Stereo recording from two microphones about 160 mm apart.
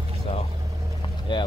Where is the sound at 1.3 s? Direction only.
30° left (ahead or behind).